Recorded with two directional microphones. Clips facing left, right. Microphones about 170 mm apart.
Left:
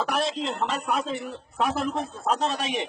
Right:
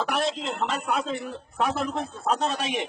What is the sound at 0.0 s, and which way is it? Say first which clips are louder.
Speech: even; centre (ahead or behind).